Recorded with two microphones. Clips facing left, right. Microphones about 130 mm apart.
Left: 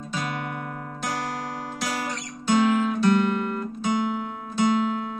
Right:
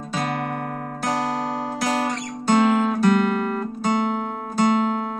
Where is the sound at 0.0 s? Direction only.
60° right (ahead or behind).